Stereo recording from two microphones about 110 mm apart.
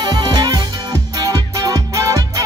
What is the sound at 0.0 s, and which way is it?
Music, 40° right (ahead or behind).